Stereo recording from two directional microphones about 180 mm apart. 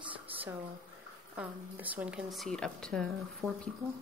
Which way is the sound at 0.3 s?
10° right (ahead or behind).